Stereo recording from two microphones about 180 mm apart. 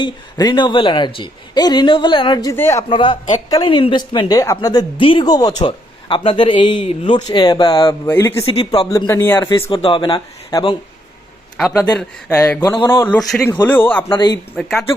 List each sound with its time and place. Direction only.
0.0 s a woman's voice: 25° left (ahead or behind)
2.9 s a woman's voice: 30° left (ahead or behind)
9.6 s a woman's voice: 30° left (ahead or behind)
11.5 s a man's voice: centre (ahead or behind)
12.3 s a man's voice: 15° left (ahead or behind)